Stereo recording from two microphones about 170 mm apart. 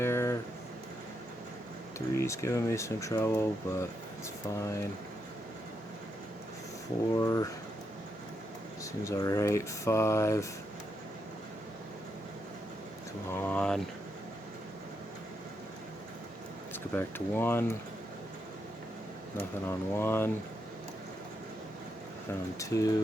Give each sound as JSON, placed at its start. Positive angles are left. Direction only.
{"t": 0.0, "sound": "a sound", "side_deg": 15}
{"t": 2.1, "sound": "speech", "side_deg": 15}
{"t": 7.2, "sound": "speech", "side_deg": 20}
{"t": 8.8, "sound": "speech", "side_deg": 20}
{"t": 13.3, "sound": "speech", "side_deg": 10}
{"t": 16.7, "sound": "speech", "side_deg": 10}
{"t": 19.4, "sound": "speech", "side_deg": 15}
{"t": 22.5, "sound": "speech", "side_deg": 20}